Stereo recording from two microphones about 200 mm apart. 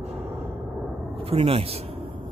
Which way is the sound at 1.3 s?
30° right (ahead or behind).